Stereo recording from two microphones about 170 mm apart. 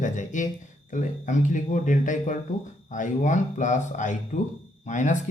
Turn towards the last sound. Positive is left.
turn(degrees=45)  # may be behind; listen again after turning